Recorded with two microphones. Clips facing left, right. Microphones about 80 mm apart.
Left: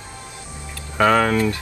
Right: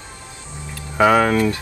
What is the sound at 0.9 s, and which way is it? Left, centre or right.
Speech, centre.